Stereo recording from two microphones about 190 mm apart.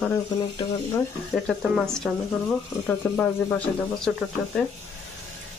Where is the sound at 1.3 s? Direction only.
Centre (ahead or behind).